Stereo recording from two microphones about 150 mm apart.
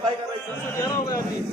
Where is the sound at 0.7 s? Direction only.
20° left (ahead or behind).